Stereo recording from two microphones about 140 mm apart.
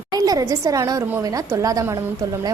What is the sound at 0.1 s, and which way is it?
A woman's voice, 25° right (ahead or behind).